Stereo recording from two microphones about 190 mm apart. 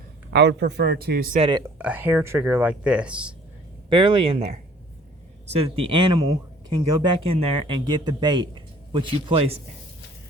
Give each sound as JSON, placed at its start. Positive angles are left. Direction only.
{"t": 0.3, "sound": "a man's voice", "side_deg": -65}
{"t": 1.4, "sound": "speech", "side_deg": -25}
{"t": 1.8, "sound": "speech", "side_deg": -10}
{"t": 3.8, "sound": "speech", "side_deg": -25}